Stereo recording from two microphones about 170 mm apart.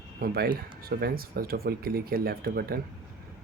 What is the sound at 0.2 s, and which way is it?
Speech, 65° right (ahead or behind).